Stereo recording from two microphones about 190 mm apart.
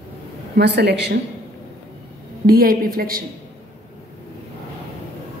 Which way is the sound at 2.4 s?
50° right (ahead or behind).